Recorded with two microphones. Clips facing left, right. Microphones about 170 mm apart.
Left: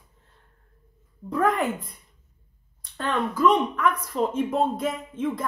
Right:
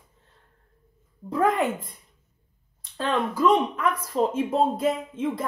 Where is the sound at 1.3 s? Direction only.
30° right (ahead or behind).